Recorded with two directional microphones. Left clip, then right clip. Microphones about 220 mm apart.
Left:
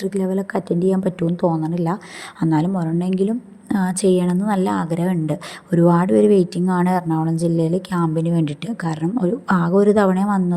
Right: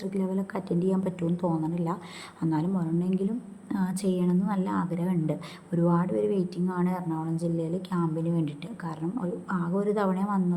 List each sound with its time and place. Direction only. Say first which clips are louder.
0.0 s a woman's voice: left 10 dB; 30° left (ahead or behind)